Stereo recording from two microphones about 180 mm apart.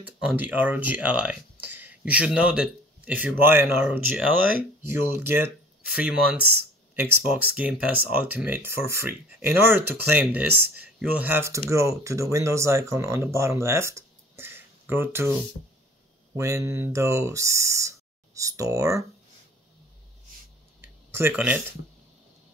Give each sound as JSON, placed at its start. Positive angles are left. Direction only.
{"t": 0.2, "sound": "speech", "side_deg": -5}
{"t": 16.3, "sound": "speech", "side_deg": -15}
{"t": 20.8, "sound": "a sound", "side_deg": -10}